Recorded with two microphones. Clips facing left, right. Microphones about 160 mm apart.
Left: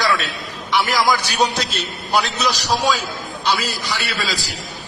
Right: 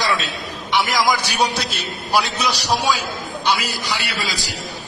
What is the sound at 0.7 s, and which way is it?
A man's voice, 20° right (ahead or behind).